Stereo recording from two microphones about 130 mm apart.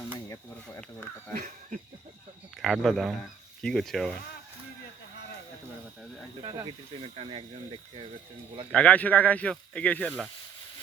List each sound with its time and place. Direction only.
0.8 s a sound: 10° left (ahead or behind)
2.6 s speech: centre (ahead or behind)
6.4 s speech: 35° right (ahead or behind)
7.0 s speech: 50° right (ahead or behind)
8.7 s speech: 10° left (ahead or behind)